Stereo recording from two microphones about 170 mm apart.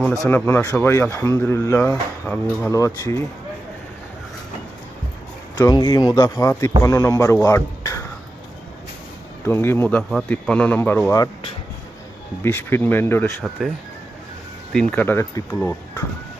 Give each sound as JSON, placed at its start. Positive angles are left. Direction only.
{"t": 0.3, "sound": "speech", "side_deg": 10}
{"t": 5.5, "sound": "speech", "side_deg": 25}
{"t": 7.4, "sound": "music", "side_deg": 20}
{"t": 9.4, "sound": "speech", "side_deg": 15}
{"t": 12.4, "sound": "speech", "side_deg": 15}
{"t": 14.7, "sound": "speech", "side_deg": 5}